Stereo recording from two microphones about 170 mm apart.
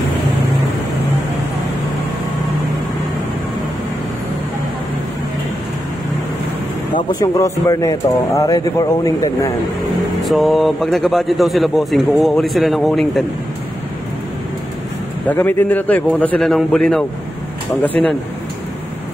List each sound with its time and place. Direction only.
7.1 s speech: 20° left (ahead or behind)
10.2 s a man's voice: centre (ahead or behind)
15.2 s a man's voice: 10° left (ahead or behind)